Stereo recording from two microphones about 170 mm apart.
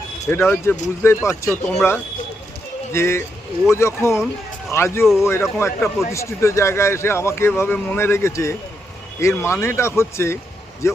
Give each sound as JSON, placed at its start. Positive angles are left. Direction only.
{"t": 0.3, "sound": "speech", "side_deg": 15}
{"t": 2.9, "sound": "speech", "side_deg": 15}